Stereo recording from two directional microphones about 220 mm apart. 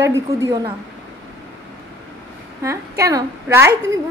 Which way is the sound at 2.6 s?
15° right (ahead or behind).